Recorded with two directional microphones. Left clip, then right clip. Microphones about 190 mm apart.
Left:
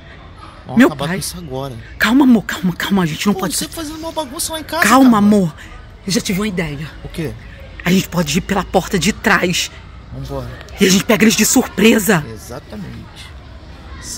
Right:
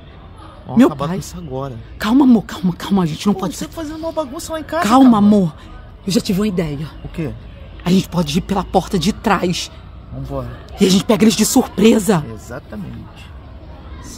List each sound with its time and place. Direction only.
0.7 s speech: centre (ahead or behind)
3.4 s speech: 10° left (ahead or behind)
6.1 s speech: 20° right (ahead or behind)
7.8 s speech: centre (ahead or behind)